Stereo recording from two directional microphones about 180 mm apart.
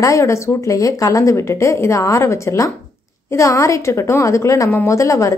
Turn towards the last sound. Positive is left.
turn(degrees=20)  # may be behind; listen again after turning